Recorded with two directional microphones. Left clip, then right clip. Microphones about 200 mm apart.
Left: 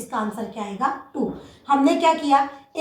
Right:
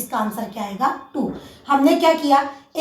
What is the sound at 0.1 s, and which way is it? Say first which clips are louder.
A woman's voice: right 3 dB; 20° right (ahead or behind).